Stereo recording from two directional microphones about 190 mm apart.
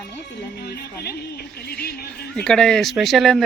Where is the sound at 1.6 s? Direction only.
55° left (ahead or behind).